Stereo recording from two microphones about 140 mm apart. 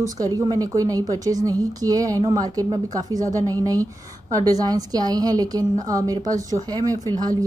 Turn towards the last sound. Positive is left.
turn(degrees=-25)  # may be behind; listen again after turning